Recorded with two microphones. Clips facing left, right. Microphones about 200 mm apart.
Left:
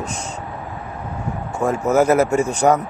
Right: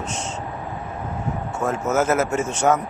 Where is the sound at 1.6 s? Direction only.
15° left (ahead or behind).